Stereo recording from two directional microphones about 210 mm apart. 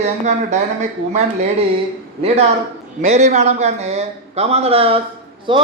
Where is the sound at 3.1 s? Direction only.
35° right (ahead or behind).